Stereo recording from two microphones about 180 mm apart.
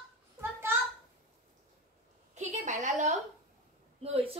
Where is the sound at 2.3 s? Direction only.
40° right (ahead or behind).